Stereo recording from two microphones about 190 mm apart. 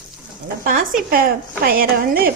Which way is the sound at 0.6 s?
45° right (ahead or behind).